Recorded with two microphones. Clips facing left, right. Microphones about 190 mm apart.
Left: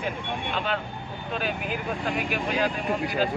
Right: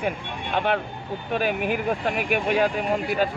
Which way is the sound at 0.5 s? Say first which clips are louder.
Right 10 dB; 60° right (ahead or behind).